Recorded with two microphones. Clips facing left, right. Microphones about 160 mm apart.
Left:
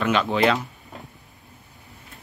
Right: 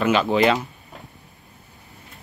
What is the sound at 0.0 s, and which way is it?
Speech, 5° right (ahead or behind).